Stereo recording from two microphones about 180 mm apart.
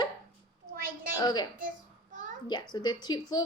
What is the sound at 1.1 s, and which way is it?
Speech, 25° left (ahead or behind).